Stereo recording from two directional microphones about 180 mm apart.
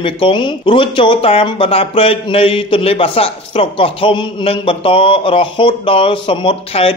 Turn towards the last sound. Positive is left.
turn(degrees=30)  # may be behind; listen again after turning